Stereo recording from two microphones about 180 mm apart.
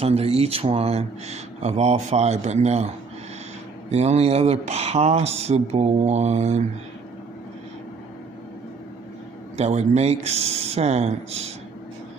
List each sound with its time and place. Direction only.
0.0 s speech: 35° right (ahead or behind)
3.9 s speech: 35° right (ahead or behind)
9.6 s speech: 40° right (ahead or behind)